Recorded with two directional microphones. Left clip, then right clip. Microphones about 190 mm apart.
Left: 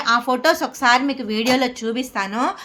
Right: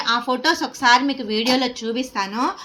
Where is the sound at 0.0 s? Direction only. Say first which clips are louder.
Left 3 dB; 35° left (ahead or behind).